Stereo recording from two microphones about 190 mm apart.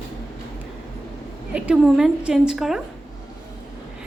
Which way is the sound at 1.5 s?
5° right (ahead or behind).